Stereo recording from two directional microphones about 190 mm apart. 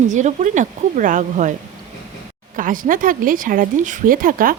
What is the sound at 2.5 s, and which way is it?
Speech, 45° right (ahead or behind).